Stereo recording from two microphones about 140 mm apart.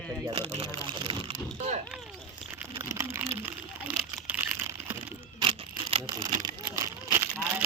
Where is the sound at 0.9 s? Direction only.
35° right (ahead or behind).